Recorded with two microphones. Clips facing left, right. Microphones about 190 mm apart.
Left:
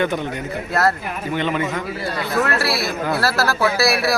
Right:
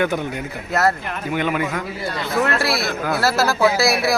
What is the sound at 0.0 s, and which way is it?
Speech, 10° right (ahead or behind).